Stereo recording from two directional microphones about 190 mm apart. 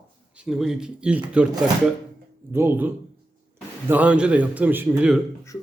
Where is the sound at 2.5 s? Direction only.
10° right (ahead or behind).